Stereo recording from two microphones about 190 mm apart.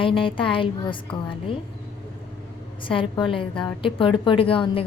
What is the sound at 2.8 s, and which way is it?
A woman's voice, 25° left (ahead or behind).